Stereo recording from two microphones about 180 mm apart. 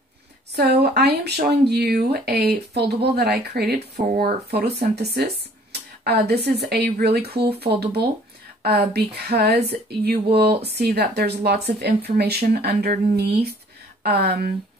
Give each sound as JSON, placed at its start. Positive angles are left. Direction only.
{"t": 0.6, "sound": "speech", "side_deg": -65}